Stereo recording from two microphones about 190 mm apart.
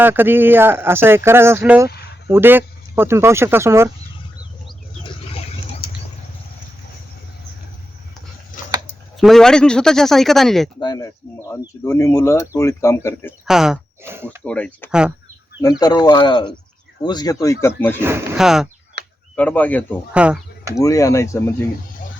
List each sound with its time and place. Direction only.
0.0 s speech: 10° right (ahead or behind)
9.1 s speech: centre (ahead or behind)
10.8 s speech: 20° left (ahead or behind)
13.4 s speech: centre (ahead or behind)
14.4 s speech: 5° left (ahead or behind)
15.6 s speech: 20° left (ahead or behind)
18.0 s speech: 10° right (ahead or behind)
19.0 s a sound: 60° right (ahead or behind)
19.4 s speech: 10° left (ahead or behind)
20.1 s speech: 5° right (ahead or behind)
20.7 s speech: 15° left (ahead or behind)